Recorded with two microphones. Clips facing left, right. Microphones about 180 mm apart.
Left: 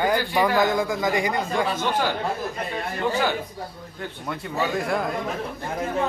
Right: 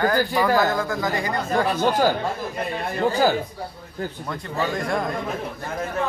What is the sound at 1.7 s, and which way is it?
Speech, 40° right (ahead or behind).